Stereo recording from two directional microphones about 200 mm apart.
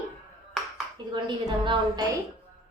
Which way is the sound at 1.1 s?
20° right (ahead or behind).